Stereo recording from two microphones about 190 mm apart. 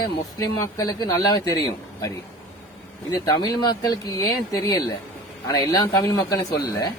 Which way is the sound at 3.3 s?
20° left (ahead or behind).